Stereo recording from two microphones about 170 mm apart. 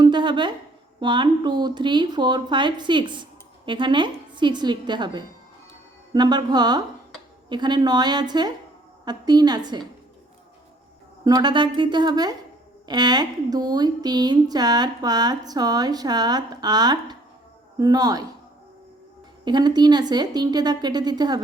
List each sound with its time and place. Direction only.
0.0 s speech: 25° right (ahead or behind)
11.3 s speech: 25° right (ahead or behind)
19.5 s speech: 25° right (ahead or behind)